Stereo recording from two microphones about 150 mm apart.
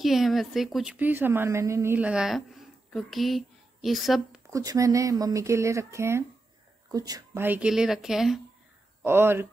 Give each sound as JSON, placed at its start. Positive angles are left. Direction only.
{"t": 0.0, "sound": "a woman's voice", "side_deg": 0}
{"t": 0.9, "sound": "a woman's voice", "side_deg": -10}
{"t": 4.5, "sound": "a woman's voice", "side_deg": -20}
{"t": 9.0, "sound": "speech", "side_deg": -15}